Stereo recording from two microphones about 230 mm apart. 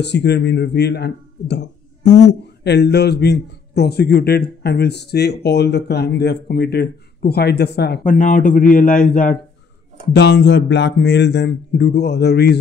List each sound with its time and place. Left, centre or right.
0.0 s speech: left
10.1 s speech: left